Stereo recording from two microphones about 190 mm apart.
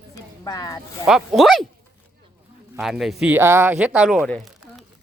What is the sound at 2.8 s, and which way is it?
Speech, centre (ahead or behind).